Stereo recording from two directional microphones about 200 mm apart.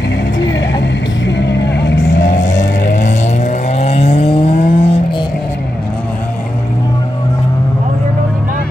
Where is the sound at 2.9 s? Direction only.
35° left (ahead or behind).